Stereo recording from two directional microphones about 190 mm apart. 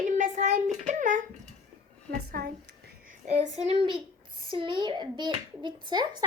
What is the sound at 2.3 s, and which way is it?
Speech, 55° right (ahead or behind).